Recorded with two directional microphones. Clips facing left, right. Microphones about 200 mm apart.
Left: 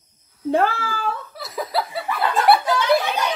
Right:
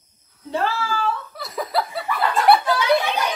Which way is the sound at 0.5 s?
55° left (ahead or behind).